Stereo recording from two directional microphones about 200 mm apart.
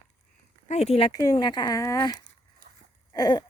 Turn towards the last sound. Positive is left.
turn(degrees=20)  # may be behind; listen again after turning